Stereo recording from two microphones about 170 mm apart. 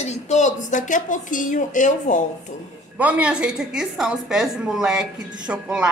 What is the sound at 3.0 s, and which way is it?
A woman's voice, 10° right (ahead or behind).